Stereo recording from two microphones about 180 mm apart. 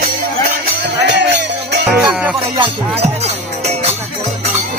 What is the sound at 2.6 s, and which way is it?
Music, 35° right (ahead or behind).